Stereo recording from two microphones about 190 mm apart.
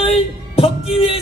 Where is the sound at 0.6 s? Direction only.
30° left (ahead or behind).